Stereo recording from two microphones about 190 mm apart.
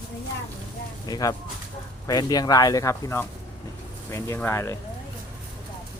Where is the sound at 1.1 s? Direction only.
20° left (ahead or behind).